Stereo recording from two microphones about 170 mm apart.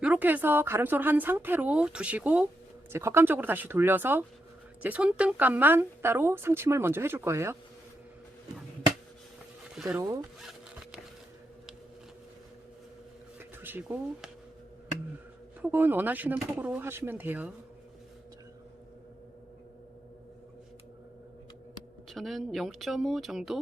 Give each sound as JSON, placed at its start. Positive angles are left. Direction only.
{"t": 0.0, "sound": "speech", "side_deg": -10}
{"t": 10.0, "sound": "speech", "side_deg": -20}
{"t": 13.6, "sound": "speech", "side_deg": -10}
{"t": 15.6, "sound": "speech", "side_deg": -10}
{"t": 22.1, "sound": "speech", "side_deg": 0}